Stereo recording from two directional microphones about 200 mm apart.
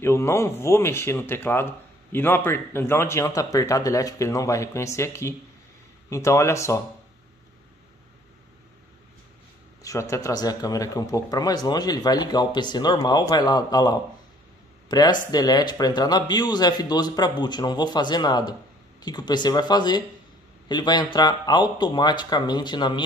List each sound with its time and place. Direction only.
0.0 s a man's voice: 15° left (ahead or behind)
9.8 s speech: 15° left (ahead or behind)